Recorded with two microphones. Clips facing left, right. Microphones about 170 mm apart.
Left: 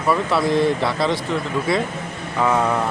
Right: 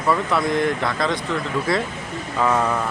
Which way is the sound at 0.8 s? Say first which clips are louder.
Left 2 dB; 5° left (ahead or behind).